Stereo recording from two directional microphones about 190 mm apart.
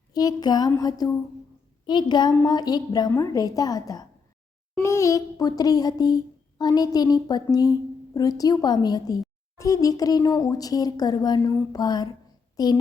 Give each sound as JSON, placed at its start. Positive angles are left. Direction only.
{"t": 0.1, "sound": "speech", "side_deg": 20}
{"t": 9.6, "sound": "a sound", "side_deg": 15}
{"t": 10.0, "sound": "a child's voice", "side_deg": 20}